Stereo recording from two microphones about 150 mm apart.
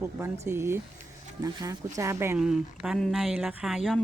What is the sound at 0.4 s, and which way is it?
Speech, 15° right (ahead or behind).